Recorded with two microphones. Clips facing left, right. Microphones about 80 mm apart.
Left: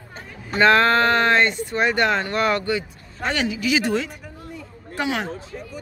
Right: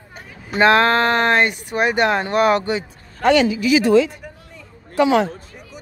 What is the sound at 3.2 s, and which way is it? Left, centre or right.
Speech, right.